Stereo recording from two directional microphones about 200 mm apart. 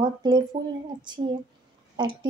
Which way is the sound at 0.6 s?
50° right (ahead or behind).